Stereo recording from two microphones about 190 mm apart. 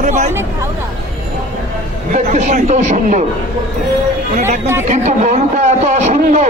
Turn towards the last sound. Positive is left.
turn(degrees=-35)  # may be behind; listen again after turning